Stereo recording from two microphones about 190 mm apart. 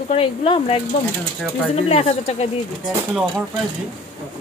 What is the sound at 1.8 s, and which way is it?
Speech, 30° left (ahead or behind).